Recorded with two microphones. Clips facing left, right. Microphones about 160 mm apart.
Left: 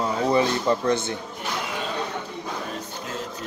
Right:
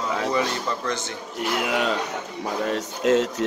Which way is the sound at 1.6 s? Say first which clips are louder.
Right 5 dB; 85° right.